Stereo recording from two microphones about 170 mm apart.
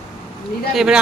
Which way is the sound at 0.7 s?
5° right (ahead or behind).